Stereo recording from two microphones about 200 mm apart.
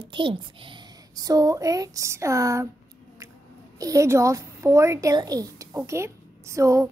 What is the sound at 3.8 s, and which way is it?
A woman's voice, 15° right (ahead or behind).